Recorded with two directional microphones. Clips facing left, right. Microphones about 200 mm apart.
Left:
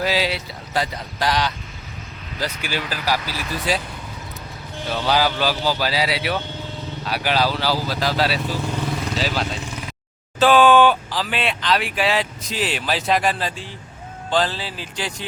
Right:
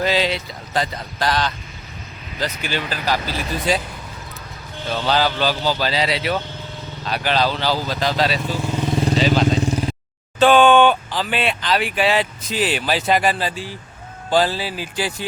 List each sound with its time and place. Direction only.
0.0 s speech: 5° left (ahead or behind)
4.9 s speech: 10° left (ahead or behind)
8.9 s vehicle: 30° right (ahead or behind)
9.1 s vehicle: 5° left (ahead or behind)
9.6 s vehicle: 35° right (ahead or behind)
10.4 s speech: centre (ahead or behind)